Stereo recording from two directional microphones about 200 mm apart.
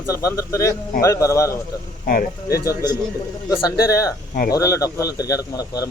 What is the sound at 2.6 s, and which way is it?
Speech, 20° left (ahead or behind).